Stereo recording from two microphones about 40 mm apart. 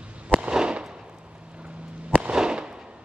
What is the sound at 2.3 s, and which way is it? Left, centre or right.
Fireworks, centre.